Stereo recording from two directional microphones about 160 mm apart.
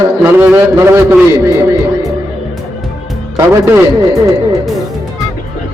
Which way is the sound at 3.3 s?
20° right (ahead or behind).